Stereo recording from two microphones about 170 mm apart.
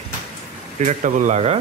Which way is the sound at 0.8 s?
45° right (ahead or behind).